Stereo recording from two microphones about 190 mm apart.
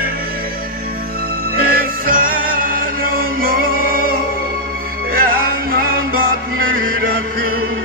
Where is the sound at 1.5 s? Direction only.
50° right (ahead or behind).